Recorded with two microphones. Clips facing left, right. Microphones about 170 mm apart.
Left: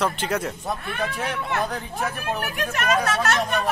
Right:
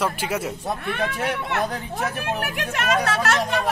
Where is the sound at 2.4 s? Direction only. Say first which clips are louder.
Even; 70° right (ahead or behind).